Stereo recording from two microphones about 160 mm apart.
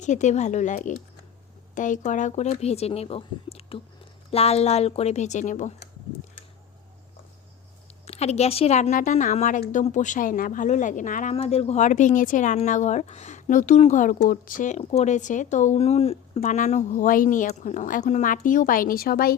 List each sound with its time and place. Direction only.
0.0 s speech: 50° left (ahead or behind)
8.0 s speech: 40° left (ahead or behind)
11.3 s speech: 40° left (ahead or behind); by 19.3 s 70° left (ahead or behind)